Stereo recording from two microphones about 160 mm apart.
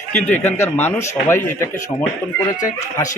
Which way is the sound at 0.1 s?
10° left (ahead or behind).